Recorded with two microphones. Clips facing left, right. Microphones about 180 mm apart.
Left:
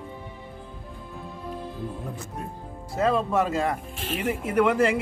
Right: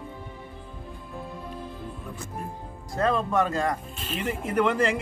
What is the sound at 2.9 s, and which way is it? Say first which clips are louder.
Speech: left 1 dB; 5° left (ahead or behind).